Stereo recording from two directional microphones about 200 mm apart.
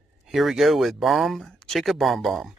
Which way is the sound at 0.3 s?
Centre (ahead or behind).